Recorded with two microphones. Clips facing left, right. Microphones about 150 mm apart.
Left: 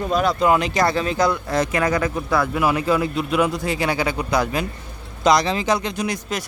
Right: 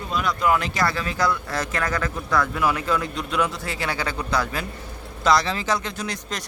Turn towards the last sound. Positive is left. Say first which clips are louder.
# left 6 dB
turn(degrees=10)  # may be behind; listen again after turning